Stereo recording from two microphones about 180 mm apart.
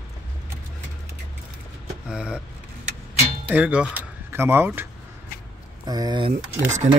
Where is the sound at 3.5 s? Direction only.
5° right (ahead or behind); by 6.5 s 25° right (ahead or behind).